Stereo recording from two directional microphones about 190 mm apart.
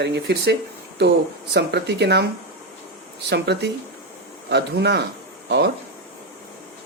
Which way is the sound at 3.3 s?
65° right (ahead or behind).